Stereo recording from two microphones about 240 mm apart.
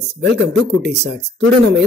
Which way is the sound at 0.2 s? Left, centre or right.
Right.